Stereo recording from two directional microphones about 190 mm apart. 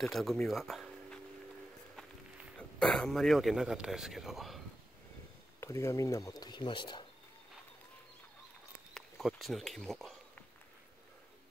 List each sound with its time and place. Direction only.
0.0 s speech: centre (ahead or behind)
2.8 s a man's voice: 5° left (ahead or behind)
5.6 s speech: 15° left (ahead or behind)
8.9 s a sound: centre (ahead or behind)